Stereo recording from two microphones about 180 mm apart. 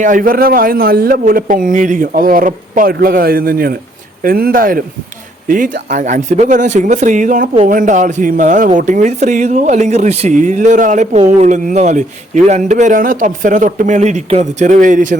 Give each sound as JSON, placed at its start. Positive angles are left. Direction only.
{"t": 0.0, "sound": "speech", "side_deg": -50}